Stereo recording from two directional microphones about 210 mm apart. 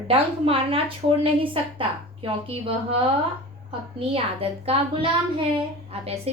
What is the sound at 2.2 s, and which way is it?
A woman's voice, 25° right (ahead or behind).